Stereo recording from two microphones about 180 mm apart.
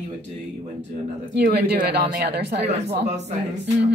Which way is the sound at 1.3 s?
60° right (ahead or behind).